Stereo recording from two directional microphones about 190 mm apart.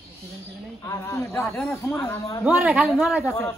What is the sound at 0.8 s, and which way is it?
Speech, 15° left (ahead or behind).